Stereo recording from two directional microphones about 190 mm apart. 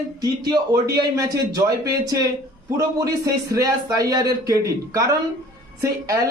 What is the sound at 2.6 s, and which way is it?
Speech, 15° right (ahead or behind).